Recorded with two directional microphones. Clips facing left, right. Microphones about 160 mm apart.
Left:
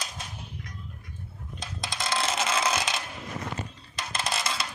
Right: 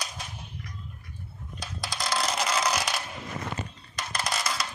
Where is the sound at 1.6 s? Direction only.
20° left (ahead or behind).